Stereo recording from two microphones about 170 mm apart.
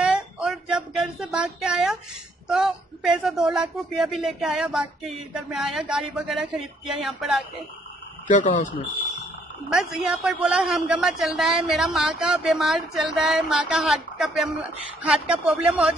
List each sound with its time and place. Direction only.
0.0 s a sound: 5° right (ahead or behind)
2.4 s speech: 5° right (ahead or behind)
8.3 s speech: 50° left (ahead or behind)
9.7 s speech: 5° right (ahead or behind)